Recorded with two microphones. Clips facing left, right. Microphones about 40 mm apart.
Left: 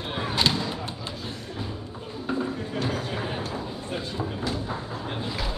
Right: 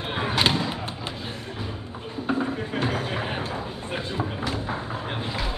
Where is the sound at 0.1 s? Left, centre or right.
Right.